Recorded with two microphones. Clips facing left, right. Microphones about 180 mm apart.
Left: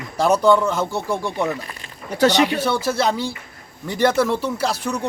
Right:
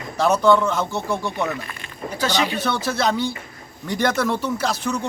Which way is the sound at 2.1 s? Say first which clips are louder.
Left 6 dB; 70° left (ahead or behind).